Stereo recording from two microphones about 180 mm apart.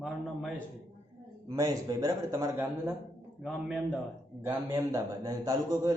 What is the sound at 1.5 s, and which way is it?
A man's voice, 20° right (ahead or behind).